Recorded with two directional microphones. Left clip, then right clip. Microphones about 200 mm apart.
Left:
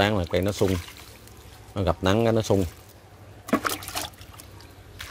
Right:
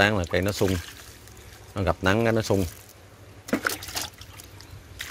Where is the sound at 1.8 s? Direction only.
10° left (ahead or behind).